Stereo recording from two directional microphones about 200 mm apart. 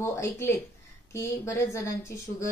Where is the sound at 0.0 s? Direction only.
15° left (ahead or behind).